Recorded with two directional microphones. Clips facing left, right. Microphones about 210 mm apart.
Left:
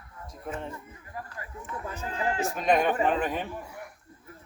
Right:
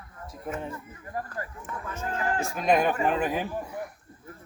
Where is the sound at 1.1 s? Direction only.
50° right (ahead or behind).